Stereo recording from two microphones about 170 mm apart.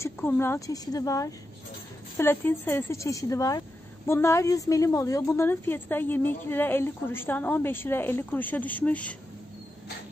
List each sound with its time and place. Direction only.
0.0 s a woman's voice: 15° left (ahead or behind)